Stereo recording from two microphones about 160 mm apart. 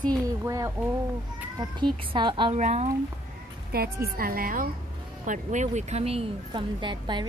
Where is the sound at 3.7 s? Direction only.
75° right (ahead or behind).